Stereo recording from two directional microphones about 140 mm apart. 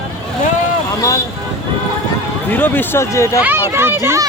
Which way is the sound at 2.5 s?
15° left (ahead or behind).